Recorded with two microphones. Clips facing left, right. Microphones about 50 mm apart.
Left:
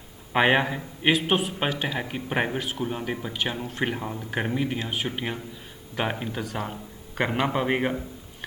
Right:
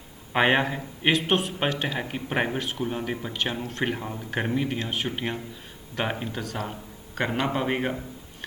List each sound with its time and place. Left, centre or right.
0.3 s speech: centre
6.4 s a man's voice: centre